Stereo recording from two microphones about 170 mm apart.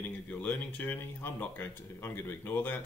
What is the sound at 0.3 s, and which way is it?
Speech, 10° left (ahead or behind).